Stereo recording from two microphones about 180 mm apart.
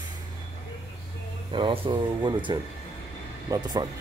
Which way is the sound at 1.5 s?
25° right (ahead or behind).